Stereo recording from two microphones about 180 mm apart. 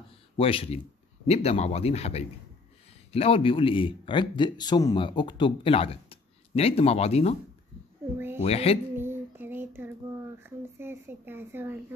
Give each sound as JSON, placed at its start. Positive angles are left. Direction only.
{"t": 0.4, "sound": "a man's voice", "side_deg": 30}
{"t": 8.4, "sound": "speech", "side_deg": 35}
{"t": 8.9, "sound": "a sound", "side_deg": -10}